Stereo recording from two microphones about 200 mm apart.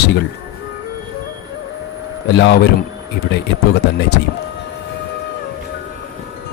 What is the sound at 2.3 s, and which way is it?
Speech, 60° left (ahead or behind).